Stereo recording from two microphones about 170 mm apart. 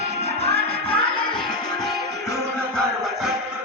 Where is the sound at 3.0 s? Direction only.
Centre (ahead or behind).